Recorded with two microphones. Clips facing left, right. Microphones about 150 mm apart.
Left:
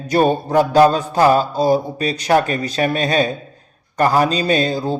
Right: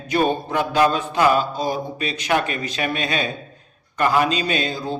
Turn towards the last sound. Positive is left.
turn(degrees=35)  # may be behind; listen again after turning